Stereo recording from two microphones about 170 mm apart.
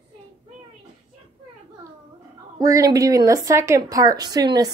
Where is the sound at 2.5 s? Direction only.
20° right (ahead or behind).